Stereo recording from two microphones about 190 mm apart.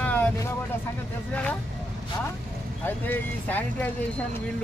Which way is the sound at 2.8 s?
10° left (ahead or behind).